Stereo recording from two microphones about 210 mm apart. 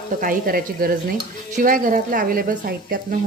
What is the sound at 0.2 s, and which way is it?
Speech, 45° right (ahead or behind).